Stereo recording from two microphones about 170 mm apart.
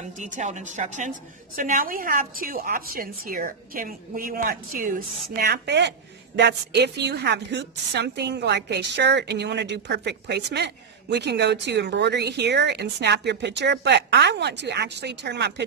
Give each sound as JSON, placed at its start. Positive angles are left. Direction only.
{"t": 0.0, "sound": "a woman's voice", "side_deg": -45}